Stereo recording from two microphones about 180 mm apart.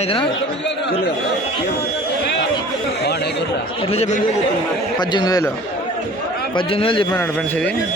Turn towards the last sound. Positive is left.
turn(degrees=30)  # may be behind; listen again after turning